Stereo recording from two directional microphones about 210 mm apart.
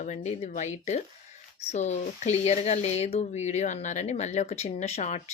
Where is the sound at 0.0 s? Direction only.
35° left (ahead or behind).